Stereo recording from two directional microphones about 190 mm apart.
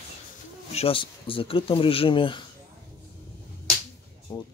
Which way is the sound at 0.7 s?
30° left (ahead or behind).